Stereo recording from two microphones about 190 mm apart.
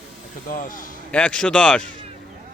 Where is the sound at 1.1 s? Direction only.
5° left (ahead or behind).